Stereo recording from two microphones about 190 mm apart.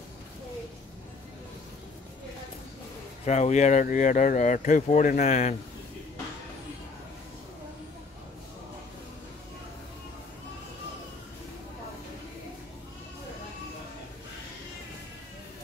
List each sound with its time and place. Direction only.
3.3 s speech: 40° left (ahead or behind)